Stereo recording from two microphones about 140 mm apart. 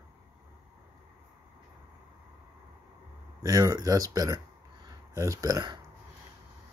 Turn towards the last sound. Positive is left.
turn(degrees=-25)  # may be behind; listen again after turning